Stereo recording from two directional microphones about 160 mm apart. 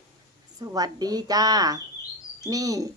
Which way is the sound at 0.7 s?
25° right (ahead or behind).